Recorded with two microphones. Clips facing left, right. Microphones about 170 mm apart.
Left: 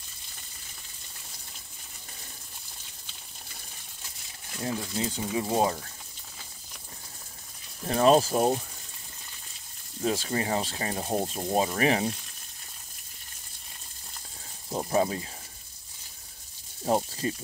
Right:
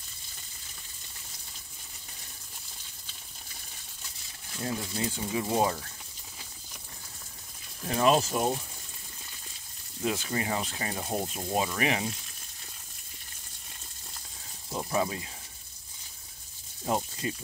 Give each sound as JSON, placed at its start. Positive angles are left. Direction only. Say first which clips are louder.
{"t": 4.6, "sound": "speech", "louder": "left 2 dB", "side_deg": 25}
{"t": 7.8, "sound": "speech", "louder": "left 4 dB", "side_deg": 35}
{"t": 10.0, "sound": "speech", "louder": "left 2 dB", "side_deg": 30}
{"t": 14.7, "sound": "speech", "louder": "left 4 dB", "side_deg": 30}
{"t": 16.8, "sound": "speech", "louder": "left 4 dB", "side_deg": 35}